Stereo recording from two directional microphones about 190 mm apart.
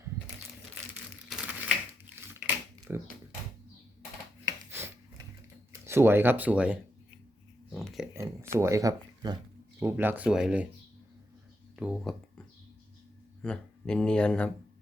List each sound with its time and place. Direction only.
1.3 s typewriter: 5° right (ahead or behind)
2.9 s speech: 10° right (ahead or behind)
4.4 s a sound: 15° right (ahead or behind)
5.8 s speech: 15° right (ahead or behind)
7.7 s a sound: centre (ahead or behind)
8.1 s a sound: 15° right (ahead or behind)
9.8 s speech: 10° right (ahead or behind)
11.8 s speech: 5° right (ahead or behind)
13.4 s speech: 5° left (ahead or behind)